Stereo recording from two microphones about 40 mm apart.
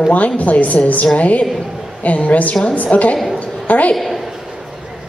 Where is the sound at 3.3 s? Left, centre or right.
Left.